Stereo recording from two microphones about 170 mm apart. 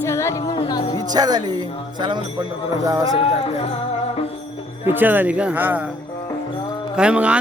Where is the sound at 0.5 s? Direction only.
30° left (ahead or behind).